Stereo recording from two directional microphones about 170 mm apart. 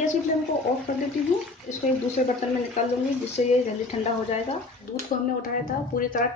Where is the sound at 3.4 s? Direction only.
45° left (ahead or behind).